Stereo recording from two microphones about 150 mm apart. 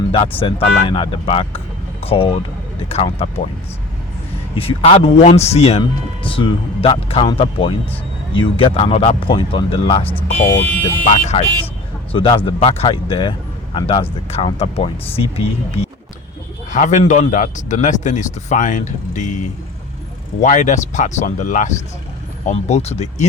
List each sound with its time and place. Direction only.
0.1 s speech: 35° left (ahead or behind)
4.5 s speech: 40° left (ahead or behind)
12.1 s speech: 35° left (ahead or behind)
16.7 s a man's voice: 55° left (ahead or behind)
20.4 s speech: 55° left (ahead or behind)
22.4 s speech: 45° left (ahead or behind)